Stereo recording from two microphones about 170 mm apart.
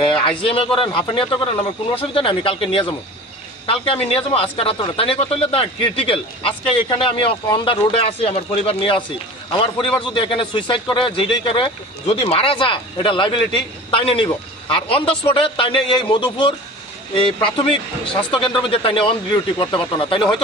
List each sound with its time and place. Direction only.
0.0 s speech: 30° left (ahead or behind)